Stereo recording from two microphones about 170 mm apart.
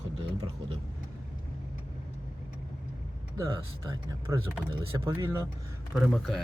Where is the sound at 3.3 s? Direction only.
20° right (ahead or behind).